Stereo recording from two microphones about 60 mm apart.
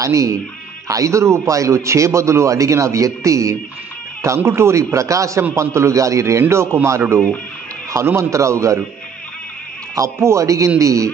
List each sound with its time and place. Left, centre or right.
0.0 s a man's voice: right
4.5 s a man's voice: right
5.5 s a man's voice: right
8.2 s a man's voice: right
9.9 s a man's voice: right